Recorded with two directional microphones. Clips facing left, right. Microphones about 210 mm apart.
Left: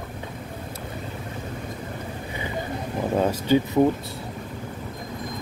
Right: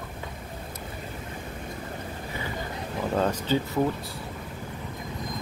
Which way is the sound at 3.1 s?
10° left (ahead or behind).